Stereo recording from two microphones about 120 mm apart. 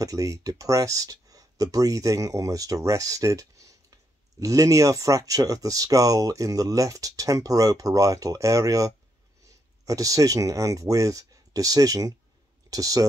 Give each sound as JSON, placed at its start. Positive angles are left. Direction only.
{"t": 0.0, "sound": "speech", "side_deg": -30}